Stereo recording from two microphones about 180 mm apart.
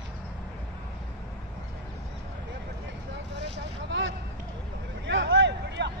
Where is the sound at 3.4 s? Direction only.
75° right (ahead or behind).